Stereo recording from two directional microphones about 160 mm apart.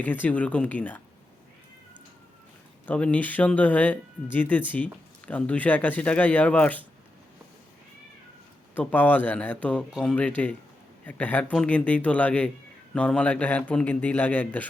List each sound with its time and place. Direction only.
0.0 s speech: 10° left (ahead or behind)
2.8 s speech: 10° left (ahead or behind)
8.7 s speech: 10° left (ahead or behind)